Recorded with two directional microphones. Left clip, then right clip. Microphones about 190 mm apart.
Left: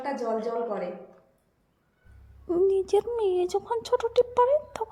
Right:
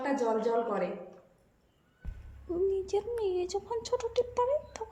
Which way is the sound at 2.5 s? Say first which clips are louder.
Left 7 dB; 30° left (ahead or behind).